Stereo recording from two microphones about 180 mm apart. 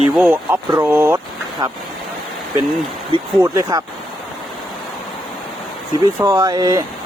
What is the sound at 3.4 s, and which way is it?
Speech, 20° right (ahead or behind).